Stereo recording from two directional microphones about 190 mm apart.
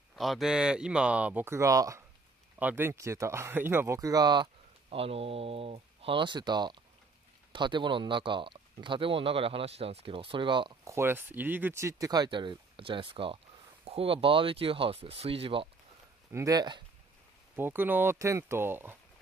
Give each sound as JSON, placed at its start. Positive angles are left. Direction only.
{"t": 0.1, "sound": "speech", "side_deg": 0}
{"t": 11.0, "sound": "speech", "side_deg": -10}
{"t": 16.3, "sound": "speech", "side_deg": -15}
{"t": 17.6, "sound": "speech", "side_deg": -10}